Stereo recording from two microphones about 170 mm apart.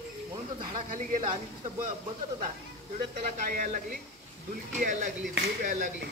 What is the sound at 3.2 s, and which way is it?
Speech, 55° right (ahead or behind).